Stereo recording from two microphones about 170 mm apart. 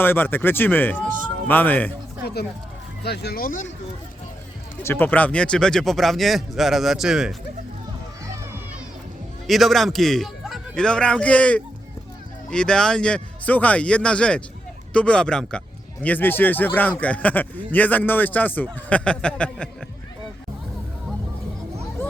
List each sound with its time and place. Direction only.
0.0 s speech: 10° left (ahead or behind)
3.0 s speech: 70° left (ahead or behind); by 3.7 s 55° left (ahead or behind)
4.8 s speech: 15° left (ahead or behind); by 7.3 s 5° right (ahead or behind)
9.5 s speech: centre (ahead or behind)